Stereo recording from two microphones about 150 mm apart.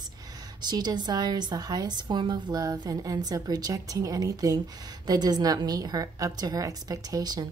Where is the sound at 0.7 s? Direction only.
30° right (ahead or behind).